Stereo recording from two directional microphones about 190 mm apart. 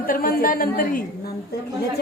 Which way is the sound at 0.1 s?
50° left (ahead or behind).